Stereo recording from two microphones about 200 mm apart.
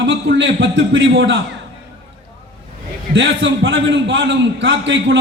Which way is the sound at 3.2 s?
70° right (ahead or behind).